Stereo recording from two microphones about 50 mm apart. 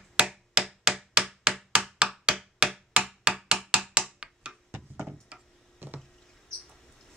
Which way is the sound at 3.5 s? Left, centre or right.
Centre.